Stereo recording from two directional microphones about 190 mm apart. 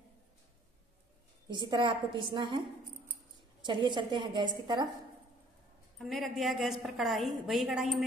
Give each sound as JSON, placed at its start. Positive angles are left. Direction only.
{"t": 1.5, "sound": "a woman's voice", "side_deg": -25}
{"t": 3.6, "sound": "a woman's voice", "side_deg": -25}
{"t": 5.9, "sound": "a woman's voice", "side_deg": 0}